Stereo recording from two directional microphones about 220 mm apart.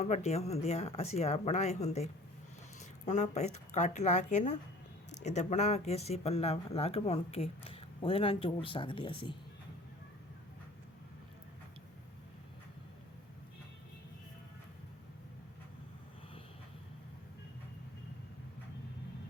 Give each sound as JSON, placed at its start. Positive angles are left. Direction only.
{"t": 0.0, "sound": "speech", "side_deg": 30}
{"t": 3.1, "sound": "a woman's voice", "side_deg": 30}